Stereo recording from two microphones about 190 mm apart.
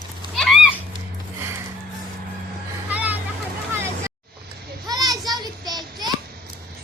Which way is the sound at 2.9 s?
10° right (ahead or behind).